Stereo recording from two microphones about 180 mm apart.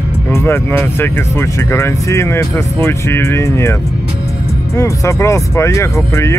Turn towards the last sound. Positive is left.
turn(degrees=15)  # may be behind; listen again after turning